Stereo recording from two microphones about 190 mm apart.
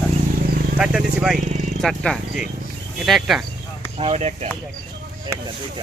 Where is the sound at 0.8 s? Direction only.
5° right (ahead or behind).